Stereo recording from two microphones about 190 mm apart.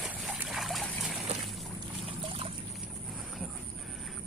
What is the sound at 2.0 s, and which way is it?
Trickle, 30° right (ahead or behind).